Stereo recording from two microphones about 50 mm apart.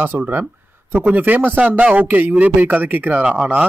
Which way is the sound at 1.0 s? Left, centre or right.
Right.